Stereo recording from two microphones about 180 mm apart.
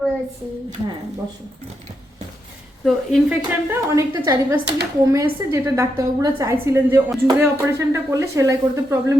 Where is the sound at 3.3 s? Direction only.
15° right (ahead or behind).